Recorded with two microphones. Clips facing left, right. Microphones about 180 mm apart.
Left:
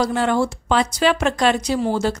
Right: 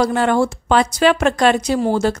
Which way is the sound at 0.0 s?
55° right (ahead or behind).